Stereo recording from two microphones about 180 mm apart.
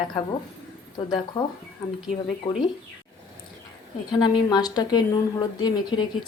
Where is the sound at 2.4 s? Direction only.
25° left (ahead or behind).